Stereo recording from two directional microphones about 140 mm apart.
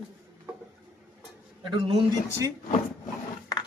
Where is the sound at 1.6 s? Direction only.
35° right (ahead or behind).